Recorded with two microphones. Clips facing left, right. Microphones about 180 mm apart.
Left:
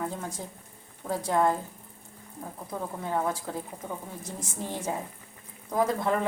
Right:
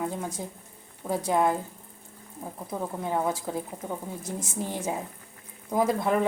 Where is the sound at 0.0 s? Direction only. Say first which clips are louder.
Right 3 dB; 15° right (ahead or behind).